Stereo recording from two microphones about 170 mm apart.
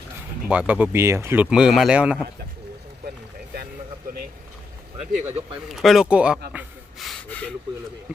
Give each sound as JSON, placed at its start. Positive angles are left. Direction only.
{"t": 0.5, "sound": "speech", "side_deg": -10}
{"t": 4.9, "sound": "speech", "side_deg": -40}
{"t": 5.7, "sound": "speech", "side_deg": 0}
{"t": 6.5, "sound": "snort", "side_deg": 0}